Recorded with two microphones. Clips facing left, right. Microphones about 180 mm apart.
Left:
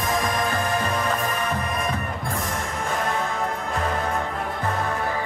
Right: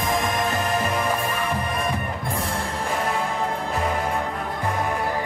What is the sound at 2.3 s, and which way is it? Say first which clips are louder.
Music: right 1 dB; 30° right (ahead or behind).